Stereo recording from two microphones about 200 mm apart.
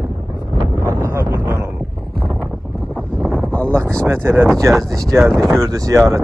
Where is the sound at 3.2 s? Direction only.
Centre (ahead or behind).